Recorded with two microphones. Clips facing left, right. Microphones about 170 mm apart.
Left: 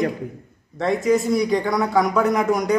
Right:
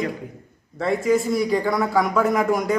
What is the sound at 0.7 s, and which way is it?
A man's voice, centre (ahead or behind).